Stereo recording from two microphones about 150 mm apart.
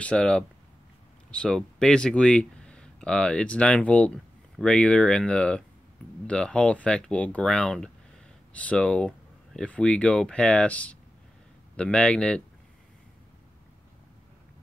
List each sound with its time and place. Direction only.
0.0 s speech: 5° left (ahead or behind)